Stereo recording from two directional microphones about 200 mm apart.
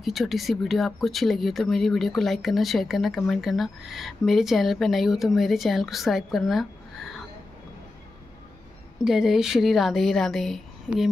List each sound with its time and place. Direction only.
0.0 s speech: centre (ahead or behind)
9.0 s speech: centre (ahead or behind)